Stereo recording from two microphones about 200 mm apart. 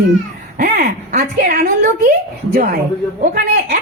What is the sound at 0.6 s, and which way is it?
Speech, 45° right (ahead or behind).